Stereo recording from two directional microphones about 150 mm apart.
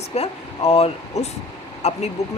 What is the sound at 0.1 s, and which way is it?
Speech, 45° left (ahead or behind).